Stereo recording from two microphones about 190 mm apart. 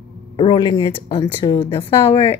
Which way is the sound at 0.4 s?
25° left (ahead or behind).